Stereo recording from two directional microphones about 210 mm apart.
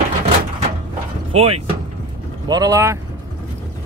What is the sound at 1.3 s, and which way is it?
Speech, 30° right (ahead or behind).